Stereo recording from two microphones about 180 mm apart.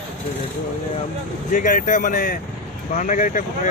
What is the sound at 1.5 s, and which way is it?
Speech, 45° left (ahead or behind).